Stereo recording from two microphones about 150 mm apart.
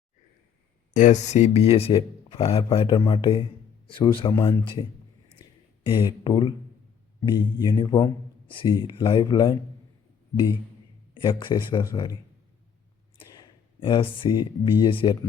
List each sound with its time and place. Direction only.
0.9 s speech: 55° left (ahead or behind); by 4.3 s 35° left (ahead or behind)
4.3 s speech: 20° left (ahead or behind)
4.6 s speech: 35° left (ahead or behind)
5.9 s speech: 30° left (ahead or behind)
11.1 s speech: 30° left (ahead or behind)
13.3 s speech: 30° left (ahead or behind)